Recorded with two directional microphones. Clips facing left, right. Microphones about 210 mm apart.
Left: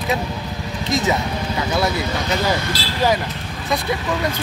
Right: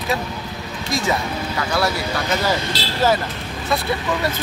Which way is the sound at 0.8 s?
20° left (ahead or behind).